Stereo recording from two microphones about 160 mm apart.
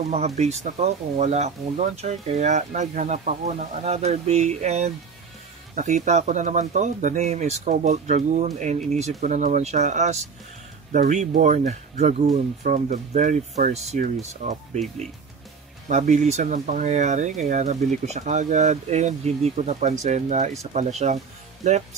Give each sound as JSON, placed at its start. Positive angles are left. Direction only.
{"t": 0.4, "sound": "speech", "side_deg": -45}
{"t": 15.9, "sound": "speech", "side_deg": -45}